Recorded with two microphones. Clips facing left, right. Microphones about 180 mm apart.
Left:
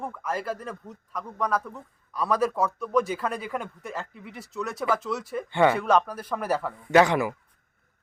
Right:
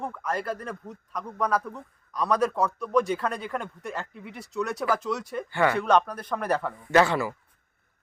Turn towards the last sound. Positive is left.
turn(degrees=15)  # may be behind; listen again after turning